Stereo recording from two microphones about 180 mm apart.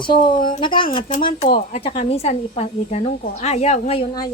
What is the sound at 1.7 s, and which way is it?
Speech, 35° left (ahead or behind).